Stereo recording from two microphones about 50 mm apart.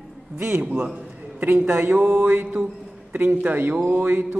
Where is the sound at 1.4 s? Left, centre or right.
Right.